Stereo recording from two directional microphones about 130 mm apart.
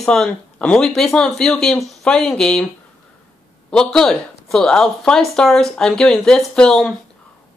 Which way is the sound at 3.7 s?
5° left (ahead or behind).